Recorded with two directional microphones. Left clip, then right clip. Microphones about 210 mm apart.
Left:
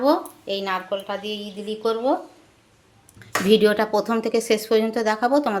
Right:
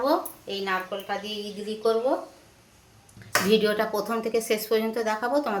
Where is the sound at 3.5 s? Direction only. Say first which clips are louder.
Left 7 dB; 45° left (ahead or behind).